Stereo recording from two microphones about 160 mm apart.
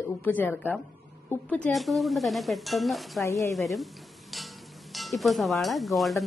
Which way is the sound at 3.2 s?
20° left (ahead or behind).